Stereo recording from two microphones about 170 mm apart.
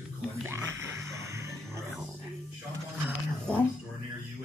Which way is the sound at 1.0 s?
15° right (ahead or behind).